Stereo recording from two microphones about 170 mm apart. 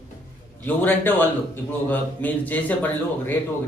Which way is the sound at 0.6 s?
10° left (ahead or behind).